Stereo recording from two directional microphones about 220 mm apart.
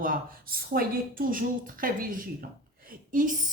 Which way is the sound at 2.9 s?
35° right (ahead or behind).